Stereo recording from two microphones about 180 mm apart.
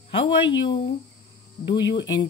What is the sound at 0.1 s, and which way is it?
Speech, 30° left (ahead or behind).